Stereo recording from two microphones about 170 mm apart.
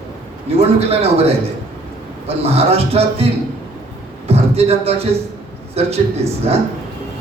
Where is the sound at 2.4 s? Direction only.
35° right (ahead or behind).